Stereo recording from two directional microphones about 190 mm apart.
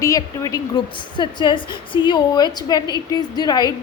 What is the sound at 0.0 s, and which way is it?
A woman's voice, 15° left (ahead or behind).